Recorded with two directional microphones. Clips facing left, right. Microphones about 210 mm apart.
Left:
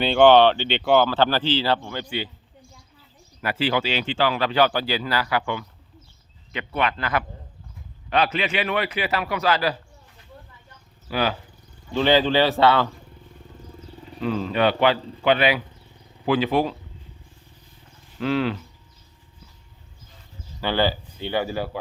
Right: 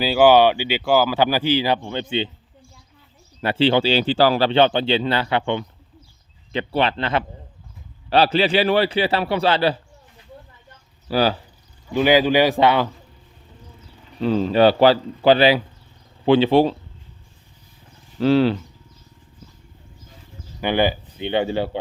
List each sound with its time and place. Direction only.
0.0 s speech: 5° right (ahead or behind); by 2.3 s 25° right (ahead or behind)
3.4 s a man's voice: 30° right (ahead or behind)
11.1 s a man's voice: 35° right (ahead or behind)
11.9 s speech: 10° right (ahead or behind)
14.2 s a man's voice: 30° right (ahead or behind)
18.2 s a man's voice: 30° right (ahead or behind)
20.6 s speech: 15° right (ahead or behind)